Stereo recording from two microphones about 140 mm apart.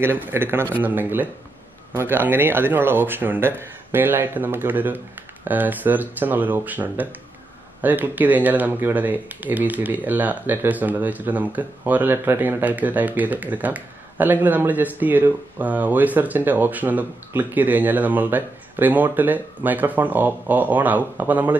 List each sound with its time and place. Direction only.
0.0 s speech: 15° right (ahead or behind)